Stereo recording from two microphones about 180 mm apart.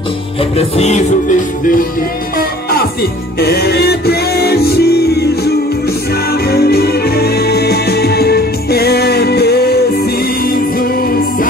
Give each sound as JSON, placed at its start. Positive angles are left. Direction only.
{"t": 0.4, "sound": "music", "side_deg": 35}
{"t": 2.3, "sound": "music", "side_deg": 60}